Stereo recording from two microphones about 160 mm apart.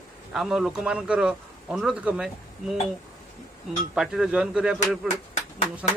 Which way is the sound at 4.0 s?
5° right (ahead or behind).